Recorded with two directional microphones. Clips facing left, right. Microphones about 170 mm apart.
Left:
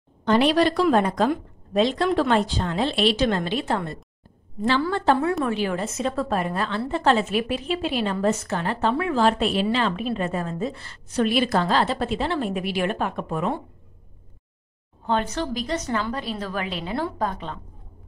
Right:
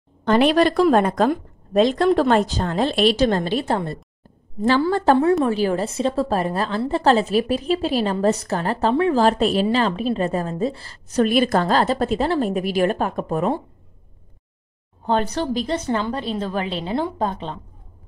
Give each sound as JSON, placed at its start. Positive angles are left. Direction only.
{"t": 0.2, "sound": "a woman's voice", "side_deg": -50}
{"t": 15.0, "sound": "a woman's voice", "side_deg": -35}